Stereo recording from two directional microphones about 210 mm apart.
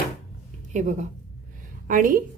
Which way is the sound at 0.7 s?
35° right (ahead or behind).